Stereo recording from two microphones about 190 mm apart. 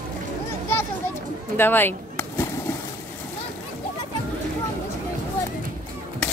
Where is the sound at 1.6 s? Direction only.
10° left (ahead or behind).